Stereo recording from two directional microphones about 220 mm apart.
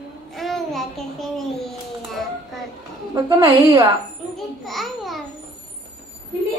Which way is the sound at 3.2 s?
20° right (ahead or behind).